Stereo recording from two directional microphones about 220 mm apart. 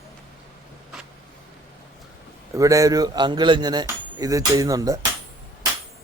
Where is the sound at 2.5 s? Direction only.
15° right (ahead or behind).